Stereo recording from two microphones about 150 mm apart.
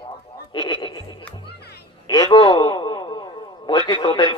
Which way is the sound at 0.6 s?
30° left (ahead or behind).